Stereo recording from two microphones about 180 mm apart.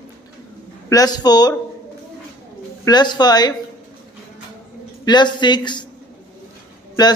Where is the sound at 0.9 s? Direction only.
20° left (ahead or behind).